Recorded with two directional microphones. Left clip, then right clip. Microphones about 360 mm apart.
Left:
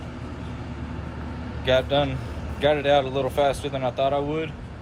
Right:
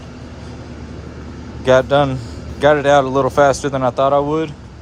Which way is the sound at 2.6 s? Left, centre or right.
Right.